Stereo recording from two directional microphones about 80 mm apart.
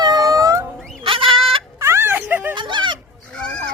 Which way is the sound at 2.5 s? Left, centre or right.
Right.